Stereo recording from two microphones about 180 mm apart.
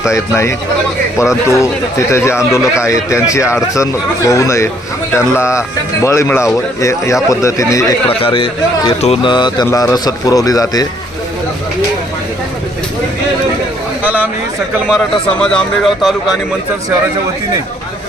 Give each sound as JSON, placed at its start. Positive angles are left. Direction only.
{"t": 0.1, "sound": "speech", "side_deg": 15}
{"t": 8.2, "sound": "a man's voice", "side_deg": 30}
{"t": 14.0, "sound": "a sound", "side_deg": -10}
{"t": 14.8, "sound": "a man's voice", "side_deg": 0}